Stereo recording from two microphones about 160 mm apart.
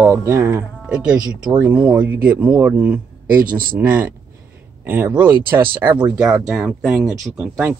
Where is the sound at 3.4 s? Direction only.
60° right (ahead or behind).